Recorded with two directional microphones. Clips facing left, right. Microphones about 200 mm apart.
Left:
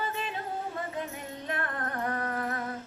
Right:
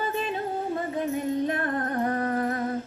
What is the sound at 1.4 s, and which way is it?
Music, 40° right (ahead or behind).